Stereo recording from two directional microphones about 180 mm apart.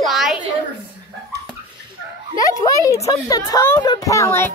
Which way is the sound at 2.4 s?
20° left (ahead or behind).